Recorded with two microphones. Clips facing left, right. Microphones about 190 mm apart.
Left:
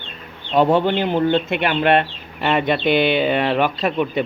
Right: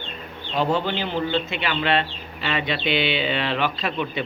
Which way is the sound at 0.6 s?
55° left (ahead or behind).